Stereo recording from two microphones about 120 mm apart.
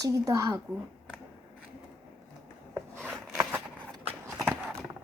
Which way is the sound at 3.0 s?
20° right (ahead or behind).